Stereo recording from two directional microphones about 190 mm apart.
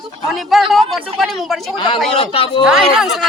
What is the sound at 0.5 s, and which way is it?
Speech, centre (ahead or behind).